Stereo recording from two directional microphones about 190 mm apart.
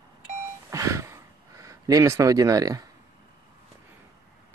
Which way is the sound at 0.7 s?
15° right (ahead or behind).